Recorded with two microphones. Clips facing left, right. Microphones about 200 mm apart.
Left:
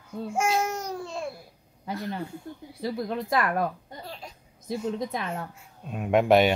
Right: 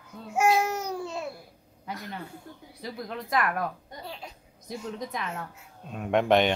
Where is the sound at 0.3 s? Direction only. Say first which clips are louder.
Right 3 dB; 5° right (ahead or behind).